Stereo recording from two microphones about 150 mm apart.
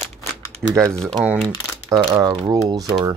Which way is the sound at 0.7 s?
20° right (ahead or behind).